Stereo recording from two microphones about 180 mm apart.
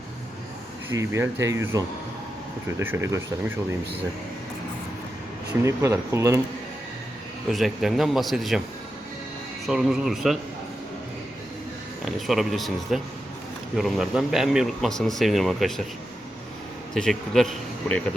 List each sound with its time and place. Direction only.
0.9 s speech: 15° right (ahead or behind)
5.6 s speech: 15° right (ahead or behind)
7.5 s speech: centre (ahead or behind)
9.6 s speech: centre (ahead or behind)
12.0 s speech: centre (ahead or behind)
16.9 s speech: centre (ahead or behind)